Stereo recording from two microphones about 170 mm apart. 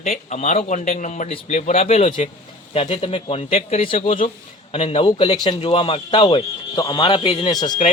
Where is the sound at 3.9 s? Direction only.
50° left (ahead or behind).